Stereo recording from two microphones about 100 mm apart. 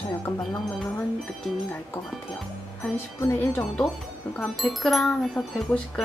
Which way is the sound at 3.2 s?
25° left (ahead or behind).